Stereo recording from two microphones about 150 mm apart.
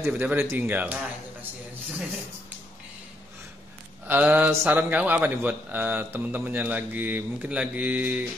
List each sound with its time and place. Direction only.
0.0 s a man's voice: 15° right (ahead or behind)
4.1 s a man's voice: 15° right (ahead or behind)